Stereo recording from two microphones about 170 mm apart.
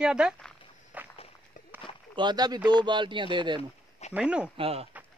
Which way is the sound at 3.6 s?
40° left (ahead or behind).